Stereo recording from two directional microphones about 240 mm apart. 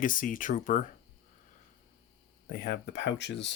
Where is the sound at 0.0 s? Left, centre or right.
Left.